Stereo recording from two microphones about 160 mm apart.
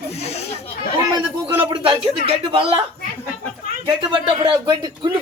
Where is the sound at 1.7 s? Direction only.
35° right (ahead or behind).